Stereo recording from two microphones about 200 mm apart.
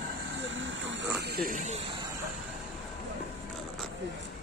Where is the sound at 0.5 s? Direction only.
70° right (ahead or behind); by 1.8 s 40° right (ahead or behind).